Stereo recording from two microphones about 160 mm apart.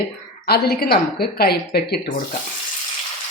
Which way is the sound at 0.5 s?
75° left (ahead or behind).